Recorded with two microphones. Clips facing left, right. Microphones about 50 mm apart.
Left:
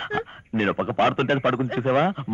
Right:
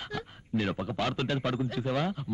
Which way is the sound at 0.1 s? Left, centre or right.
Left.